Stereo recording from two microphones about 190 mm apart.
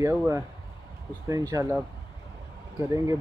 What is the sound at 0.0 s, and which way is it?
Speech, 15° right (ahead or behind).